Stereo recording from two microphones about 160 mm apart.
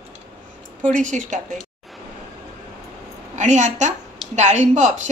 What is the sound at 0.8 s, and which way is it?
Speech, 50° right (ahead or behind).